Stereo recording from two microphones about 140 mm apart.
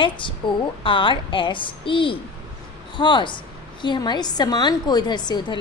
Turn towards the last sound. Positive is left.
turn(degrees=30)  # may be behind; listen again after turning